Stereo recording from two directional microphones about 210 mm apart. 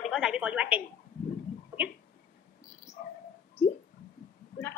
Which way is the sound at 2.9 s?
15° left (ahead or behind).